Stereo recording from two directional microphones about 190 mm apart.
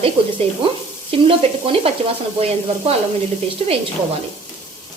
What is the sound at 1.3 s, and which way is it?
Speech, 30° right (ahead or behind).